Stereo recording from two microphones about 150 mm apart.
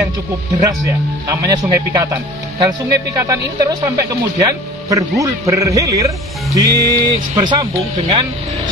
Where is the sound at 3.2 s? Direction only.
20° right (ahead or behind).